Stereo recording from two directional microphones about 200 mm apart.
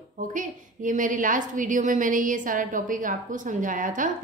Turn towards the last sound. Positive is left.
turn(degrees=-40)  # may be behind; listen again after turning